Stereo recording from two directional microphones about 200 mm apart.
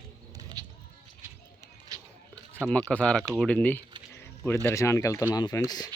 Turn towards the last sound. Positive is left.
turn(degrees=20)  # may be behind; listen again after turning